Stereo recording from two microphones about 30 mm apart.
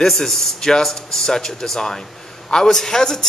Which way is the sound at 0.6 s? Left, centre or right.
Left.